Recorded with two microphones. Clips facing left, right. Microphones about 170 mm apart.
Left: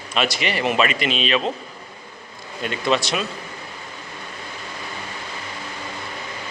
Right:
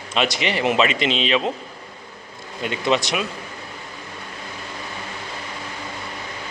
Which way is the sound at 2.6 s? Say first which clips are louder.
Right 1 dB; 20° right (ahead or behind).